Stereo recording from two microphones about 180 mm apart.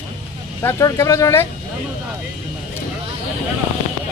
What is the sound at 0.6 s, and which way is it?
Speech, 15° left (ahead or behind).